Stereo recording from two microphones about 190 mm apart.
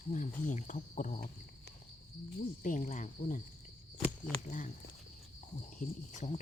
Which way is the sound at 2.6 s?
40° left (ahead or behind).